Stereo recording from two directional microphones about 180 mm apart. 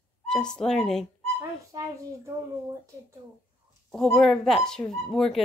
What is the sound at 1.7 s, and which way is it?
Speech, 20° right (ahead or behind).